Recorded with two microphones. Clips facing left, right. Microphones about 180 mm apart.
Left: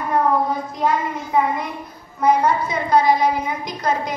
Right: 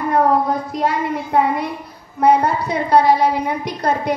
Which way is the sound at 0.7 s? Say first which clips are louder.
Right 1 dB; 70° right (ahead or behind).